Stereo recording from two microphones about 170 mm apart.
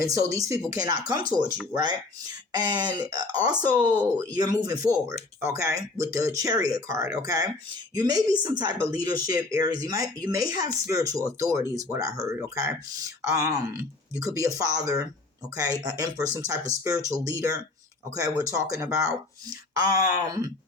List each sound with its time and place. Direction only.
0.0 s speech: 20° right (ahead or behind)
2.6 s speech: 25° right (ahead or behind)